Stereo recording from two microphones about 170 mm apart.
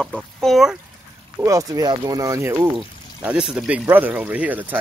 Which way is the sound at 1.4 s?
20° right (ahead or behind).